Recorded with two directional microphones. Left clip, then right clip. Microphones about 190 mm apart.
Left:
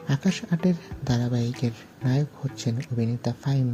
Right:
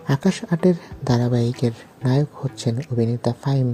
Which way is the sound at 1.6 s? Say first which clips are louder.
Right 7 dB; 40° right (ahead or behind).